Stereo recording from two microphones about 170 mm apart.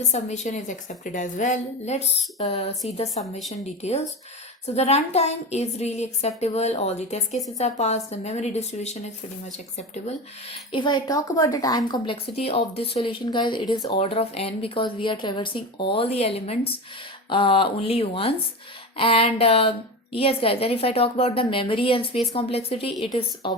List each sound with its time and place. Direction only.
0.1 s a woman's voice: 45° left (ahead or behind)